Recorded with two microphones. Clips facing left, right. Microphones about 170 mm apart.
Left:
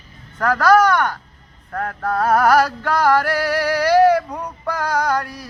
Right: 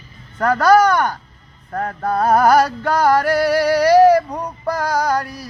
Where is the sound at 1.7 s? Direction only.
15° right (ahead or behind).